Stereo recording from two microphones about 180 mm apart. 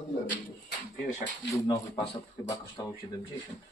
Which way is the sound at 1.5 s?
25° left (ahead or behind).